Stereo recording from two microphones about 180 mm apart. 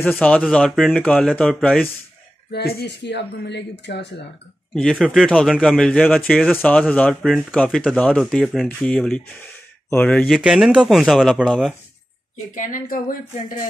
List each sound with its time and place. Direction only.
0.0 s speech: 10° left (ahead or behind)
2.5 s speech: 65° left (ahead or behind)
4.7 s speech: centre (ahead or behind)
12.5 s speech: 45° left (ahead or behind)